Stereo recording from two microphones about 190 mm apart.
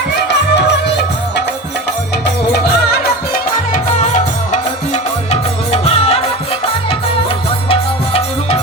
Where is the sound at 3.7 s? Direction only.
40° left (ahead or behind).